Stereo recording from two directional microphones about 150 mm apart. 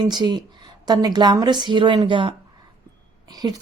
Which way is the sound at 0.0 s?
30° right (ahead or behind).